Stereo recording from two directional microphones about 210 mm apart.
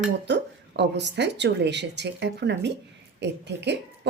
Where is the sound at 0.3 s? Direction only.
55° right (ahead or behind).